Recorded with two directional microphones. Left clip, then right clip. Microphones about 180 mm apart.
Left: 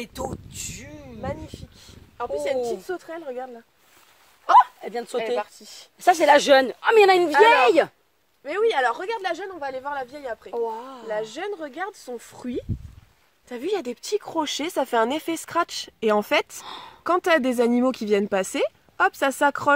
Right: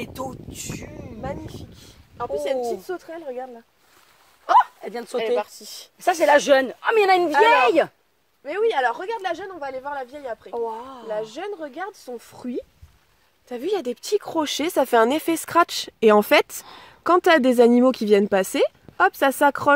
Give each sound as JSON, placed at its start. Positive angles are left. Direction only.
{"t": 0.0, "sound": "speech", "side_deg": 10}
{"t": 2.9, "sound": "speech", "side_deg": 0}
{"t": 4.6, "sound": "speech", "side_deg": 15}
{"t": 5.1, "sound": "speech", "side_deg": -55}
{"t": 5.9, "sound": "speech", "side_deg": 35}
{"t": 8.5, "sound": "speech", "side_deg": 0}
{"t": 10.5, "sound": "speech", "side_deg": 25}
{"t": 11.1, "sound": "speech", "side_deg": 5}
{"t": 13.5, "sound": "a woman's voice", "side_deg": -25}